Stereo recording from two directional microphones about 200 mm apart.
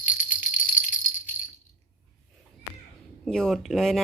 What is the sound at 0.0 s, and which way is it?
Rattle, 40° left (ahead or behind).